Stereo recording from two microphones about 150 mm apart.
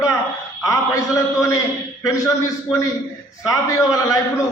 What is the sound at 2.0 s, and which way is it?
Speech, 20° left (ahead or behind).